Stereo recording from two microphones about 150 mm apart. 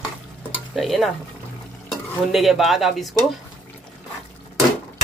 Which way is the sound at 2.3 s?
Centre (ahead or behind).